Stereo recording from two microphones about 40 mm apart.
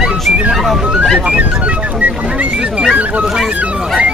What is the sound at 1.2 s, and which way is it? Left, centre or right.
Speech, right.